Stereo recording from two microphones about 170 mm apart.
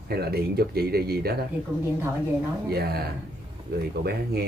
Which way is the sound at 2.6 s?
70° right (ahead or behind).